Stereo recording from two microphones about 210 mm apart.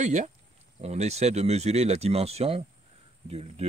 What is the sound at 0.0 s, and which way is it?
A man's voice, 35° right (ahead or behind).